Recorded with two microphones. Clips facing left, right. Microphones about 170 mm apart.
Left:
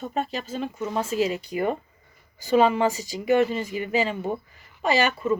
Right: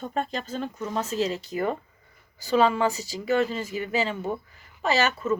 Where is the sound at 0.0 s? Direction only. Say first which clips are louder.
Left 1 dB; 5° left (ahead or behind).